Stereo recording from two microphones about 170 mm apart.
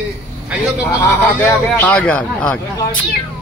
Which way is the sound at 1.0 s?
15° left (ahead or behind).